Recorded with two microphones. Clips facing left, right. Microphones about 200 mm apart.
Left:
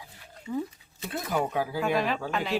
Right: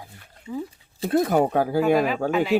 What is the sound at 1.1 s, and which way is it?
Speech, 55° right (ahead or behind).